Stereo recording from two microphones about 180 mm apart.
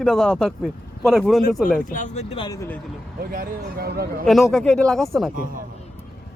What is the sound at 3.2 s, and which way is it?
Speech, 50° right (ahead or behind).